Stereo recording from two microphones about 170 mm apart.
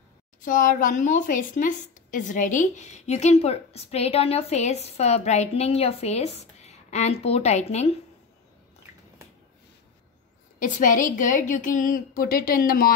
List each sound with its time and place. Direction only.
0.4 s a woman's voice: 50° left (ahead or behind)
10.6 s a woman's voice: 50° left (ahead or behind)